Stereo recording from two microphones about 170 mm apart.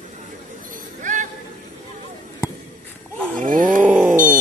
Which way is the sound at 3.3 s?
50° right (ahead or behind).